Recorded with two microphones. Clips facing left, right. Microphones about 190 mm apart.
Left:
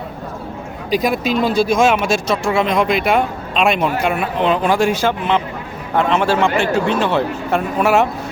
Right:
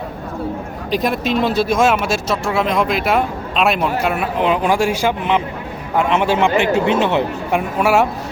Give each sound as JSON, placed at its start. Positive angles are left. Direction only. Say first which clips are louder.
{"t": 0.9, "sound": "speech", "louder": "left 1 dB", "side_deg": 0}